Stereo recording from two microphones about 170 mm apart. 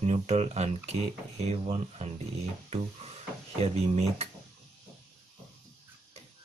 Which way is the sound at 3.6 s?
40° right (ahead or behind).